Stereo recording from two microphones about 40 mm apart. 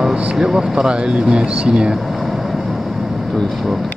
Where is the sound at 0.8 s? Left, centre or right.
Right.